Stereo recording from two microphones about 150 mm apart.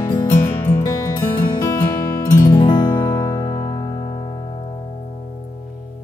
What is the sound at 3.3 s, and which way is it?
Music, 30° left (ahead or behind).